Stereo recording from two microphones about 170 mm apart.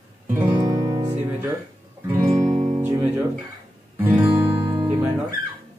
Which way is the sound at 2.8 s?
15° right (ahead or behind).